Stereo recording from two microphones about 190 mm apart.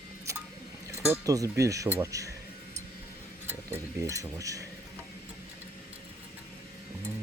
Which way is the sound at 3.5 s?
15° right (ahead or behind).